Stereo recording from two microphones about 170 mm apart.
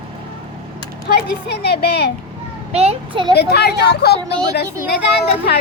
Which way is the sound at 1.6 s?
70° left (ahead or behind).